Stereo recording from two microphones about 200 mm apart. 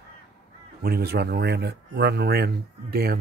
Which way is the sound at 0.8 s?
50° right (ahead or behind).